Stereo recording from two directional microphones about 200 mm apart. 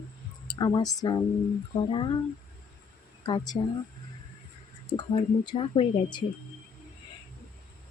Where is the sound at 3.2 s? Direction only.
20° left (ahead or behind).